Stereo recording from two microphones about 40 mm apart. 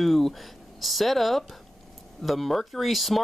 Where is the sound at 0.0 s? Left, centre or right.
Centre.